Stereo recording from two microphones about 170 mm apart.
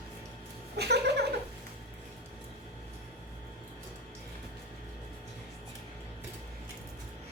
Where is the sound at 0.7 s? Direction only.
75° right (ahead or behind).